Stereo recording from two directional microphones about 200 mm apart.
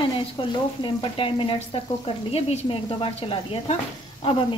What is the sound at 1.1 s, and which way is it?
Speech, 25° left (ahead or behind).